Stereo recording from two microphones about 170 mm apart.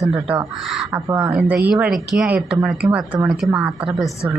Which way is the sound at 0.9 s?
15° right (ahead or behind).